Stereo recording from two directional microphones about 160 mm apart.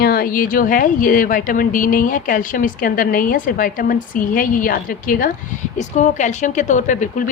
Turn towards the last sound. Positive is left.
turn(degrees=55)  # may be behind; listen again after turning